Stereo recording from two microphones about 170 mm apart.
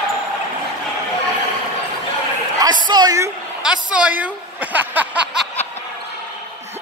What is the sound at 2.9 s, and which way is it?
Speech, 25° right (ahead or behind).